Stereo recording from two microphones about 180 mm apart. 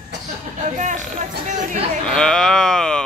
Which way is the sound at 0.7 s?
45° right (ahead or behind).